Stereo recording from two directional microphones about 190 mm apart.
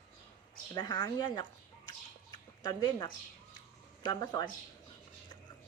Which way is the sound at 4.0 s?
20° left (ahead or behind).